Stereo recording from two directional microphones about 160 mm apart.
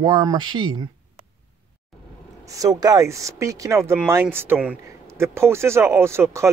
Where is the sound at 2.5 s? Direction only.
20° right (ahead or behind).